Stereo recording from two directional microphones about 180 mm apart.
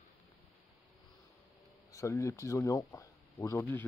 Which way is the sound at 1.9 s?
15° left (ahead or behind).